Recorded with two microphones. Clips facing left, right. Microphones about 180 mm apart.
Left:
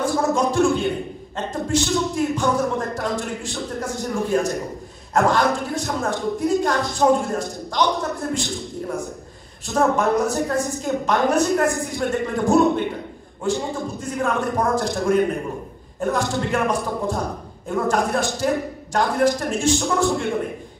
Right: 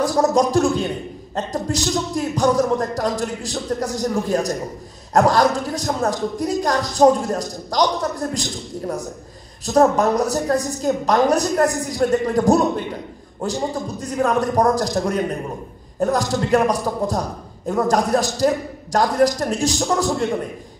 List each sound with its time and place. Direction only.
0.0 s a sound: 40° right (ahead or behind)
1.3 s speech: 40° right (ahead or behind)
13.4 s speech: 40° right (ahead or behind)